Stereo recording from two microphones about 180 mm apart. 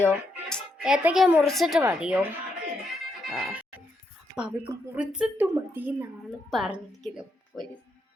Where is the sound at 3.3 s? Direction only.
5° right (ahead or behind).